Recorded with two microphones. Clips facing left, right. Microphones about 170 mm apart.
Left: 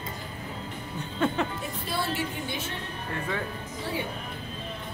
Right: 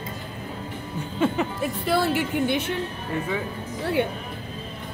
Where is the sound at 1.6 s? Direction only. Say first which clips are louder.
Right 9 dB; 65° right (ahead or behind).